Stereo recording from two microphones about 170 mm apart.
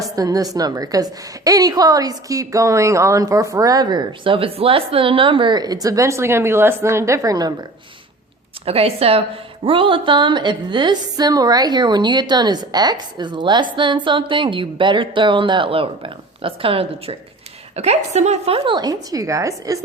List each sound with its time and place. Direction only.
0.0 s a woman's voice: 20° right (ahead or behind)
8.6 s a woman's voice: 35° right (ahead or behind); by 19.8 s 20° right (ahead or behind)